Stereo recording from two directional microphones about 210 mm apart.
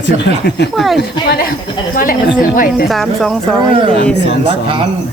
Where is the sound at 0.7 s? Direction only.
Centre (ahead or behind).